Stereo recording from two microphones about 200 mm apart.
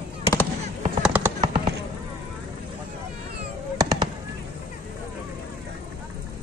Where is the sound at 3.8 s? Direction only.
20° right (ahead or behind).